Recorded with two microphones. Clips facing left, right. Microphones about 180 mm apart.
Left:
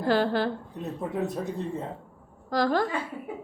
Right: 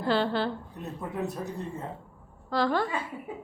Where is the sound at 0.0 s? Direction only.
45° left (ahead or behind).